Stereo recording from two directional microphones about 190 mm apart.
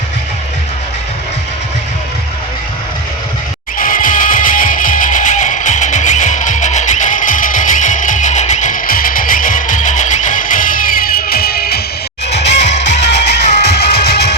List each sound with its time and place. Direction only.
3.8 s music: 45° left (ahead or behind)
12.3 s music: 65° left (ahead or behind)
12.6 s music: 40° left (ahead or behind)
13.1 s music: 65° left (ahead or behind)